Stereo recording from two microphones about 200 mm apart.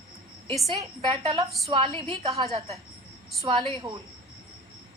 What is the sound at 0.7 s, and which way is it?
A woman's voice, 25° right (ahead or behind).